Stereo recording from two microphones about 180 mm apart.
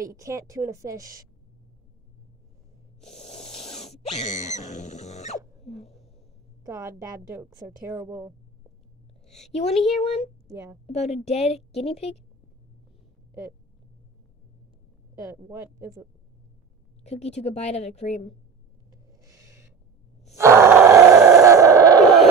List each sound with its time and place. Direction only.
0.0 s a woman's voice: 20° right (ahead or behind)
3.1 s a sound: 40° left (ahead or behind)
6.6 s a woman's voice: 15° right (ahead or behind)
9.5 s a woman's voice: 35° left (ahead or behind)
9.8 s speech: centre (ahead or behind)
10.0 s a woman's voice: 35° left (ahead or behind)
10.5 s a woman's voice: 15° right (ahead or behind)
10.9 s a woman's voice: 35° left (ahead or behind)
15.1 s a woman's voice: 20° right (ahead or behind)
17.0 s a woman's voice: 35° left (ahead or behind)
18.9 s a sound: 20° right (ahead or behind)
20.3 s groan: 15° right (ahead or behind)
22.0 s a sound: centre (ahead or behind)